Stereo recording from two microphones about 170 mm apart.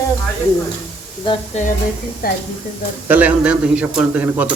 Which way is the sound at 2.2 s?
60° left (ahead or behind).